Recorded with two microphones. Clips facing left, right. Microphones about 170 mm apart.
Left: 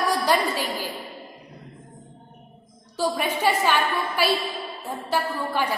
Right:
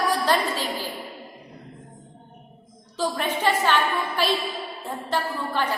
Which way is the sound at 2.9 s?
10° left (ahead or behind).